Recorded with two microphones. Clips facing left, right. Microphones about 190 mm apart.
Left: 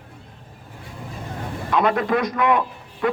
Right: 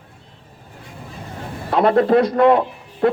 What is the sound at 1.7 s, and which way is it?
Speech, 60° right (ahead or behind).